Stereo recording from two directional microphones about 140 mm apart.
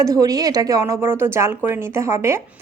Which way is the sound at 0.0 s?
25° right (ahead or behind).